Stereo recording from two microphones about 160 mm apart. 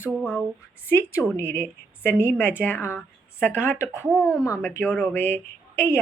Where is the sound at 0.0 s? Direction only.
5° right (ahead or behind).